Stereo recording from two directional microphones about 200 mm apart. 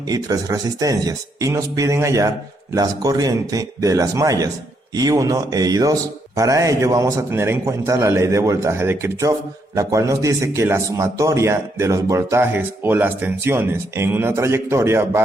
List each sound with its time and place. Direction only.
0.1 s a man's voice: 20° right (ahead or behind)